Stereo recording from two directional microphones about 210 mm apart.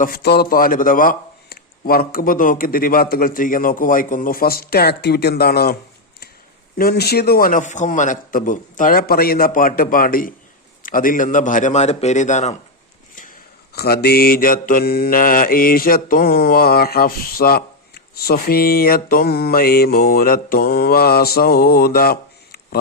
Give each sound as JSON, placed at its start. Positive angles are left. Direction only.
{"t": 0.0, "sound": "mantra", "side_deg": 45}
{"t": 6.7, "sound": "mantra", "side_deg": 45}
{"t": 10.8, "sound": "a man's voice", "side_deg": 40}
{"t": 13.7, "sound": "mantra", "side_deg": 50}